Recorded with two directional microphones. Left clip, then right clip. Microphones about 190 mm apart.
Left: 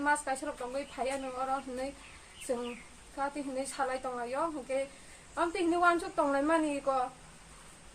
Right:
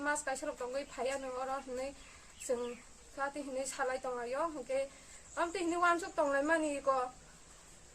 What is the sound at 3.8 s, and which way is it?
Speech, 25° right (ahead or behind).